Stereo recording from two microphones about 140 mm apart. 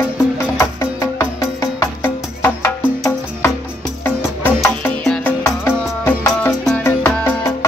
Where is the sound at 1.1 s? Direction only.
20° left (ahead or behind).